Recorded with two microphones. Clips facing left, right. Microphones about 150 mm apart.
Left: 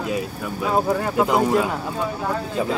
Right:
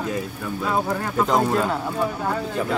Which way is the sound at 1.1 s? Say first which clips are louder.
Left 1 dB; 10° left (ahead or behind).